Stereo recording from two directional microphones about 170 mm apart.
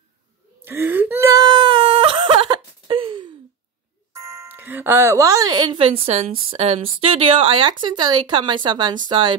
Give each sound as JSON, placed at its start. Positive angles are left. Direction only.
{"t": 0.7, "sound": "whimper", "side_deg": -10}
{"t": 4.1, "sound": "speech", "side_deg": -20}